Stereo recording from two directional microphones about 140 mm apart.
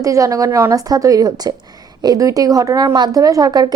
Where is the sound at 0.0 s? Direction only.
25° right (ahead or behind).